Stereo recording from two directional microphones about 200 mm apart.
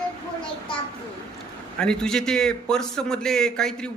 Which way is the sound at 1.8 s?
5° left (ahead or behind).